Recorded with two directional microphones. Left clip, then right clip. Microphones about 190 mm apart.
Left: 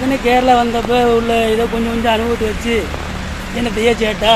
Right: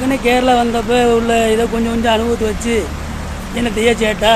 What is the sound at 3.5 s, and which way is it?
Speech, 5° right (ahead or behind).